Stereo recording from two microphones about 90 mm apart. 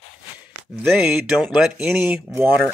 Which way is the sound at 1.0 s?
5° right (ahead or behind).